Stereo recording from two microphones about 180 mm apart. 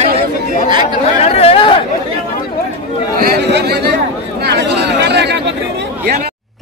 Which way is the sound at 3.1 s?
65° right (ahead or behind).